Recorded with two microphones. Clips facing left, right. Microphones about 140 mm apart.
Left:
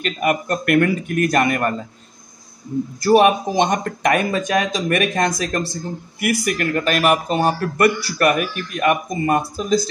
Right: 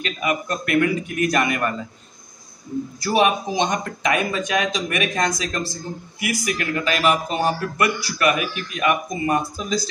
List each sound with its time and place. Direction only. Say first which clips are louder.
0.0 s speech: left 4 dB; 55° left (ahead or behind)
3.0 s speech: left 6 dB; 50° left (ahead or behind)